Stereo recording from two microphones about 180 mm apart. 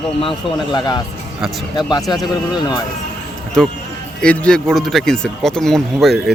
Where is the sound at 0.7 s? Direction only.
25° left (ahead or behind).